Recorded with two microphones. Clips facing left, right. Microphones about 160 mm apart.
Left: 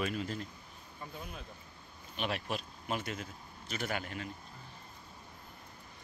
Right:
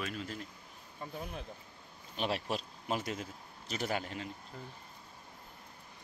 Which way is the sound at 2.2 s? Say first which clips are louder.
Right 2 dB; 35° right (ahead or behind).